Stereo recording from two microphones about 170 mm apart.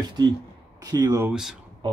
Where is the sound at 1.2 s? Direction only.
5° right (ahead or behind).